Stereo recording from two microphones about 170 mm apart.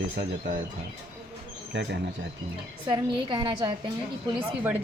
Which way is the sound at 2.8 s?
25° right (ahead or behind).